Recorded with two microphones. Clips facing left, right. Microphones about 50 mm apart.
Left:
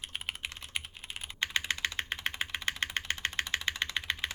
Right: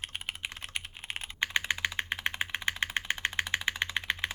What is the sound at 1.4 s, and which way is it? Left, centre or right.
Typing, centre.